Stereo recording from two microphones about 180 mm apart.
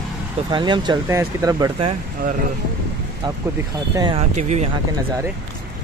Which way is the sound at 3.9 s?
25° right (ahead or behind).